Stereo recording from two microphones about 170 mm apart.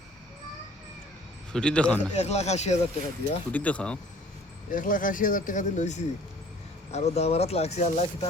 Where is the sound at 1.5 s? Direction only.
5° left (ahead or behind).